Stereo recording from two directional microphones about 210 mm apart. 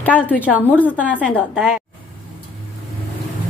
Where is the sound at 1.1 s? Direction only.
5° right (ahead or behind).